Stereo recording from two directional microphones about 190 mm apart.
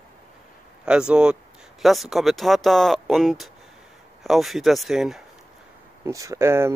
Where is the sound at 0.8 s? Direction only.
5° right (ahead or behind).